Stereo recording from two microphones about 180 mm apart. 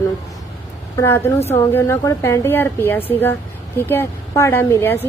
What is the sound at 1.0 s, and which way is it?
A woman's voice, 15° left (ahead or behind).